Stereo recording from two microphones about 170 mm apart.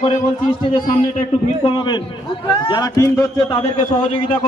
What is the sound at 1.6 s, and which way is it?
A man's voice, 25° left (ahead or behind).